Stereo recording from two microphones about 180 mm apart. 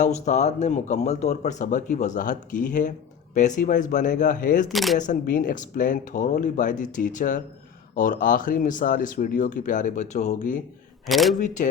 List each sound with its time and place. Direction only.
0.0 s speech: 40° left (ahead or behind)
4.7 s speech: centre (ahead or behind)
4.9 s speech: 45° left (ahead or behind)
11.0 s speech: centre (ahead or behind)
11.3 s speech: 45° left (ahead or behind)